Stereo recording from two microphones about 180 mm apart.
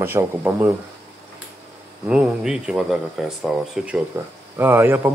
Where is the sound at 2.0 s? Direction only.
5° right (ahead or behind).